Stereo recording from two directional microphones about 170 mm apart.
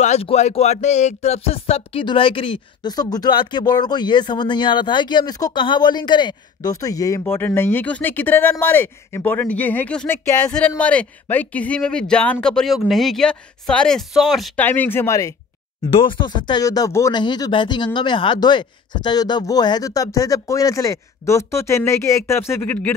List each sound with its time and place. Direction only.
0.0 s speech: 40° left (ahead or behind); by 14.5 s centre (ahead or behind)
14.6 s speech: 10° left (ahead or behind)
15.9 s speech: 30° left (ahead or behind); by 22.9 s 10° left (ahead or behind)